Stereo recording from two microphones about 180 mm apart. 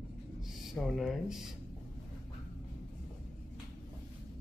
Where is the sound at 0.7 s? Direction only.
Centre (ahead or behind).